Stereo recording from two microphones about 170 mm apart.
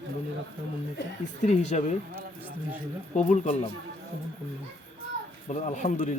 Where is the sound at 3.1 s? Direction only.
45° left (ahead or behind).